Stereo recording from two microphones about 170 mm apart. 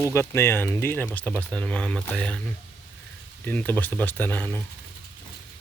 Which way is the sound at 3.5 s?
10° left (ahead or behind).